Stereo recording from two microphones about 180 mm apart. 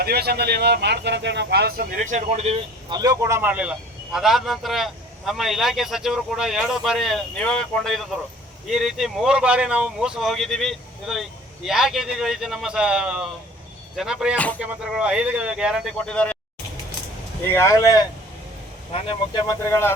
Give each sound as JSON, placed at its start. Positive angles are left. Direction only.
{"t": 0.0, "sound": "speech", "side_deg": -60}
{"t": 2.9, "sound": "a man's voice", "side_deg": -20}
{"t": 14.3, "sound": "speech", "side_deg": 10}
{"t": 14.6, "sound": "a man's voice", "side_deg": -5}
{"t": 17.4, "sound": "speech", "side_deg": 15}
{"t": 18.9, "sound": "speech", "side_deg": 30}
{"t": 19.5, "sound": "speech", "side_deg": 15}